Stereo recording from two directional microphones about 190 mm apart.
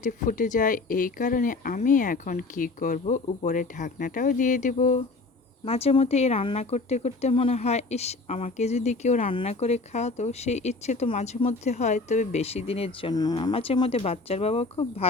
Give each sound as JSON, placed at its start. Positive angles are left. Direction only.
{"t": 0.0, "sound": "speech", "side_deg": 45}